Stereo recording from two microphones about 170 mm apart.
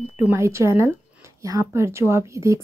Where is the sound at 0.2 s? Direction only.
15° right (ahead or behind).